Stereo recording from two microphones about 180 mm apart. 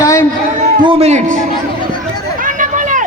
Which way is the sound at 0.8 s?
30° right (ahead or behind).